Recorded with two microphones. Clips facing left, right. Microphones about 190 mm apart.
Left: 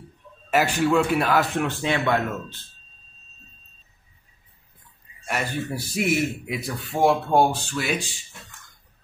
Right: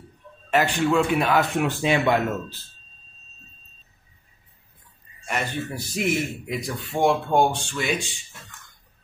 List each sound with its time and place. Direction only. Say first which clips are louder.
0.5 s a man's voice: even; 5° left (ahead or behind)
1.8 s speech: right 3 dB; 15° right (ahead or behind)
5.2 s a man's voice: even; 10° left (ahead or behind)